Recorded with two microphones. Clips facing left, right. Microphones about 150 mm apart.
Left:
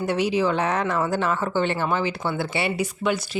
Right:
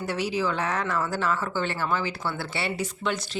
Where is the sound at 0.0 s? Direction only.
20° left (ahead or behind).